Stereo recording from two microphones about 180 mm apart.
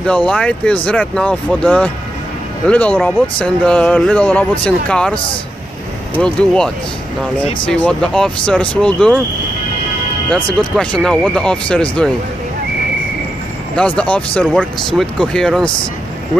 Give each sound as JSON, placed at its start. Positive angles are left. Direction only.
{"t": 0.0, "sound": "speech", "side_deg": 5}
{"t": 5.1, "sound": "a man's voice", "side_deg": 30}
{"t": 6.1, "sound": "speech", "side_deg": 5}
{"t": 10.8, "sound": "speech", "side_deg": 5}
{"t": 13.7, "sound": "speech", "side_deg": 5}